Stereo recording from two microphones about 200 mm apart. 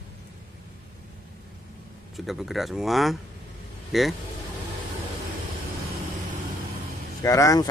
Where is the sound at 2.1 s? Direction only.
Centre (ahead or behind).